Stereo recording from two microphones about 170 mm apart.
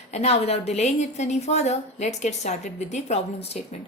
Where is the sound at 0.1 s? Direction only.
40° left (ahead or behind).